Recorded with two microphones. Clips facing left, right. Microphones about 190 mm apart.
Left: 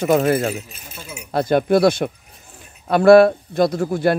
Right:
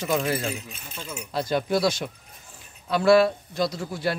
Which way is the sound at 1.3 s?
55° left (ahead or behind).